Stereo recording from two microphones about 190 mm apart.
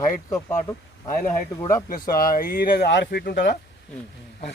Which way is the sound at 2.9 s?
60° left (ahead or behind).